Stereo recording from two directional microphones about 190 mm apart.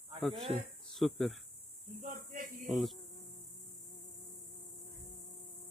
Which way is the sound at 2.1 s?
45° right (ahead or behind).